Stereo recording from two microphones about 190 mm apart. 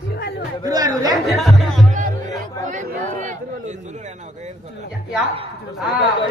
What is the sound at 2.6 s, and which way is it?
A man's voice, 40° right (ahead or behind).